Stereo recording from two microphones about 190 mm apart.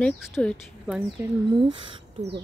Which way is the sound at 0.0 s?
Centre (ahead or behind).